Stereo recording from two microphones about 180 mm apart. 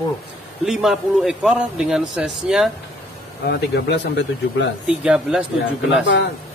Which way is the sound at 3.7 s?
75° left (ahead or behind).